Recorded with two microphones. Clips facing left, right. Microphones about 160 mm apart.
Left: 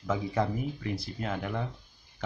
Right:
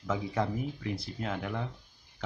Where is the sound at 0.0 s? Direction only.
Centre (ahead or behind).